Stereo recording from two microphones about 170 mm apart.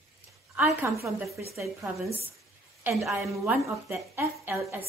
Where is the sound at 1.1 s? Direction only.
Centre (ahead or behind).